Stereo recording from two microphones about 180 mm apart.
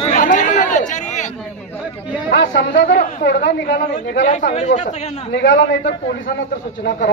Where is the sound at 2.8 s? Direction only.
55° left (ahead or behind); by 4.2 s 75° left (ahead or behind).